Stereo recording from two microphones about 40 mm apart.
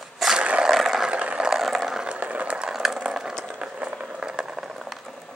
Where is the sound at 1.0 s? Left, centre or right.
Right.